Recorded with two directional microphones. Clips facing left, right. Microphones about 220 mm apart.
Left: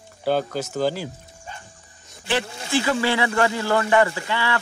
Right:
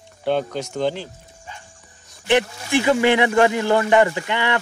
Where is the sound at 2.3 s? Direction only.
15° right (ahead or behind).